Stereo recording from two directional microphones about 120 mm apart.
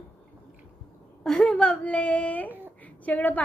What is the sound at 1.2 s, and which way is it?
A woman's voice, 5° left (ahead or behind).